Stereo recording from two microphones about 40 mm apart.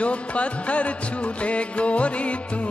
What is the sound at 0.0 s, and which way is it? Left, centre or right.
Music, left.